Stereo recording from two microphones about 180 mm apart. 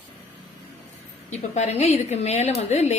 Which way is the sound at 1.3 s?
40° left (ahead or behind).